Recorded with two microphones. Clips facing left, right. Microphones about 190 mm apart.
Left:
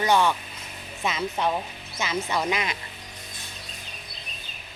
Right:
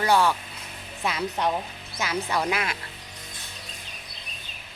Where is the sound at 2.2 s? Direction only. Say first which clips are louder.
Right 1 dB; 10° left (ahead or behind).